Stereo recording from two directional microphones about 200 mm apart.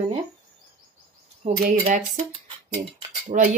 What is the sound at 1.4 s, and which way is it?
Speech, 30° right (ahead or behind).